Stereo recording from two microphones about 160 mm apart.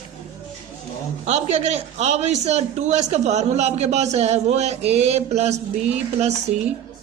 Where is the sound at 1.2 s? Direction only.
45° right (ahead or behind).